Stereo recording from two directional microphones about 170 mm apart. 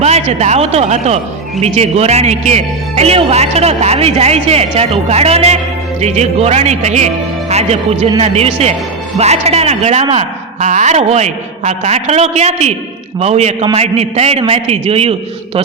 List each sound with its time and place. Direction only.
0.0 s speech: 40° right (ahead or behind)
8.2 s speech: 40° right (ahead or behind)